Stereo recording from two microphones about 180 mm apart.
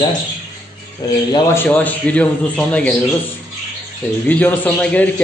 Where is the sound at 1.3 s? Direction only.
10° left (ahead or behind).